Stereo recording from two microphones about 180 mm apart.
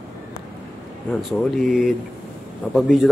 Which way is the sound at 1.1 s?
5° left (ahead or behind).